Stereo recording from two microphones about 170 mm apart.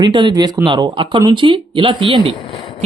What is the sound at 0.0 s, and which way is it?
Speech, 25° right (ahead or behind).